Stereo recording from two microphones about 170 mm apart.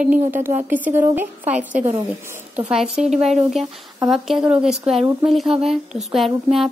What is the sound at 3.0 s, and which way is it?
Speech, 45° right (ahead or behind).